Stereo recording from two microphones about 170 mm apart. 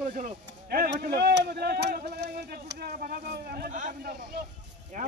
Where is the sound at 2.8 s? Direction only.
65° right (ahead or behind).